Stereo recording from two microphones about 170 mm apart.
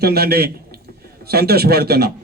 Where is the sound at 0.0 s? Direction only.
70° right (ahead or behind).